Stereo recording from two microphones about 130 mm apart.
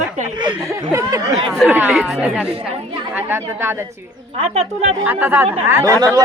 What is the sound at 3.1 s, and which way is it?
Speech, 15° right (ahead or behind).